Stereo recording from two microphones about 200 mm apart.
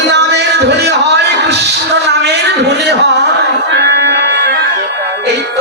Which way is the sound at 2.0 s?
55° right (ahead or behind).